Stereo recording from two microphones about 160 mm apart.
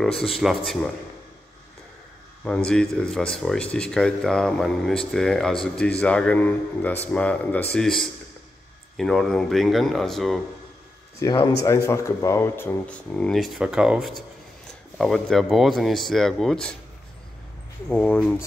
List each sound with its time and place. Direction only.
0.0 s speech: centre (ahead or behind)
2.4 s speech: 5° left (ahead or behind)
11.2 s speech: 20° left (ahead or behind); by 16.7 s 5° left (ahead or behind)
17.8 s speech: 5° left (ahead or behind)